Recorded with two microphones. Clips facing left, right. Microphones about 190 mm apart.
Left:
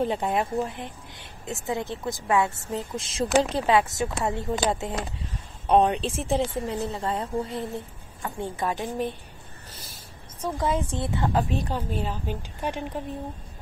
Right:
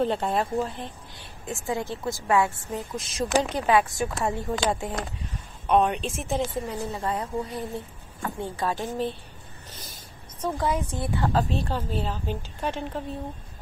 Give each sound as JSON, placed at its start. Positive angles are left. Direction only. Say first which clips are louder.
{"t": 0.0, "sound": "a woman's voice", "louder": "even", "side_deg": 15}
{"t": 10.6, "sound": "a woman's voice", "louder": "left 2 dB", "side_deg": 25}